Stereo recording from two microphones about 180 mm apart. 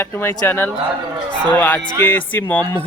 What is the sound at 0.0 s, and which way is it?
Speech, 15° left (ahead or behind).